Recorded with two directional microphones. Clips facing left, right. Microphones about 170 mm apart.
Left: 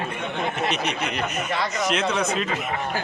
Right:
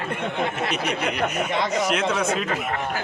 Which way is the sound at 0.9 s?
55° right (ahead or behind).